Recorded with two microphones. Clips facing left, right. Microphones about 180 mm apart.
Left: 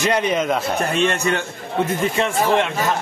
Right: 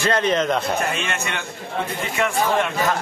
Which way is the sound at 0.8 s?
35° left (ahead or behind).